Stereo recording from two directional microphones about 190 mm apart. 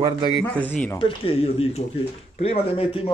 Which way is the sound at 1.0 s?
30° left (ahead or behind).